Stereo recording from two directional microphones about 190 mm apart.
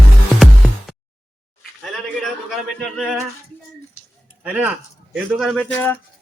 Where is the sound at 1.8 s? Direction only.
Centre (ahead or behind).